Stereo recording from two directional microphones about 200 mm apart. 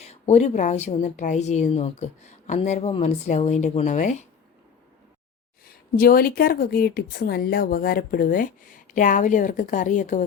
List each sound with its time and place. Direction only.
0.0 s a woman's voice: 35° left (ahead or behind)
5.6 s speech: 45° left (ahead or behind)